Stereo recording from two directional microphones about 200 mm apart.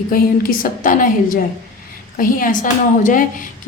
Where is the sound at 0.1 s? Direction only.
45° left (ahead or behind).